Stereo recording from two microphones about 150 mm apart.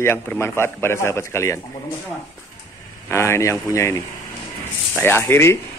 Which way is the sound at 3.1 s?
20° left (ahead or behind).